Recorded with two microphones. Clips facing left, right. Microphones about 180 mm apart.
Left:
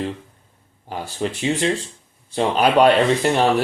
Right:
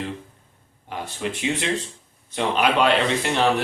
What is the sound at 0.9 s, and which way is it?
Speech, 35° left (ahead or behind).